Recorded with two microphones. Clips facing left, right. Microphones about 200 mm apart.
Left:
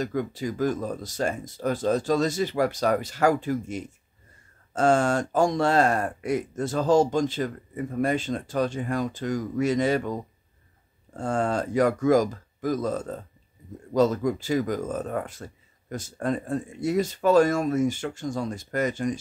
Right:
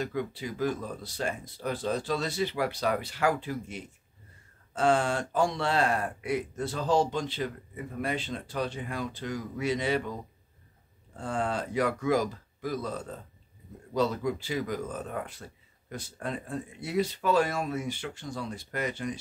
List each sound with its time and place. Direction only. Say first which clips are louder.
0.0 s speech: left 5 dB; 45° left (ahead or behind)